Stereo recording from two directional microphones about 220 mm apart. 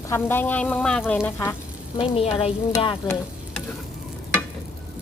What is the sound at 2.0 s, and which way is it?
Speech, 25° left (ahead or behind).